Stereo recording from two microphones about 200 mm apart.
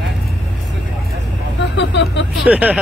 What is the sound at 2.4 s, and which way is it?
Speech, 5° right (ahead or behind).